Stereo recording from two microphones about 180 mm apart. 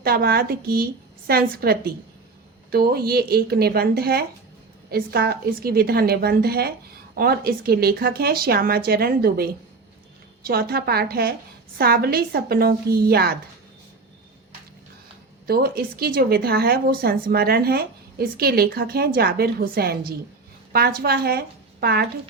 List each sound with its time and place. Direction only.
0.0 s speech: 60° right (ahead or behind)
15.4 s speech: 55° right (ahead or behind)